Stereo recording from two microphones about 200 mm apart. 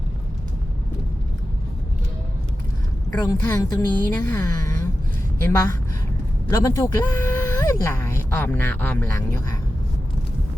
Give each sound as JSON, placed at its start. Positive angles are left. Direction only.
{"t": 3.1, "sound": "speech", "side_deg": 10}